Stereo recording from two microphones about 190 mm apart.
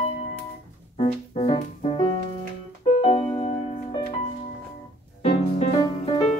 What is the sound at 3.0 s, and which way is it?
Piano, 30° left (ahead or behind).